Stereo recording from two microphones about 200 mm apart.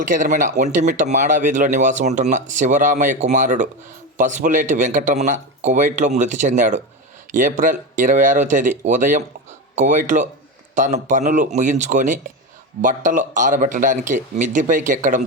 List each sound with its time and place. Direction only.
0.0 s speech: 40° right (ahead or behind)